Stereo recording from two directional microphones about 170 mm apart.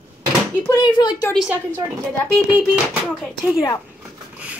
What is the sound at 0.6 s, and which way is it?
Speech, 25° left (ahead or behind).